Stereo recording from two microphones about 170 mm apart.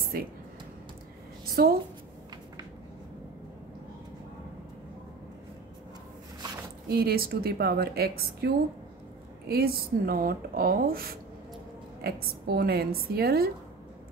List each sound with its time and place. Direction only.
0.1 s speech: 60° right (ahead or behind)
1.4 s a woman's voice: 65° right (ahead or behind)
6.9 s speech: 65° right (ahead or behind)
9.5 s speech: 65° right (ahead or behind)